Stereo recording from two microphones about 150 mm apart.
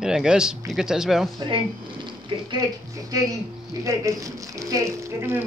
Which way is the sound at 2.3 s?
35° right (ahead or behind).